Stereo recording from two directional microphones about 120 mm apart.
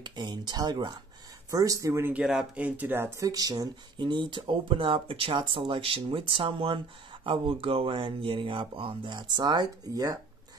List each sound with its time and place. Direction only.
0.0 s speech: 35° right (ahead or behind)
2.1 s speech: 5° right (ahead or behind); by 10.1 s 35° right (ahead or behind)